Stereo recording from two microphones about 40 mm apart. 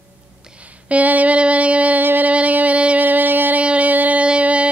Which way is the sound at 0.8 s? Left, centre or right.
Right.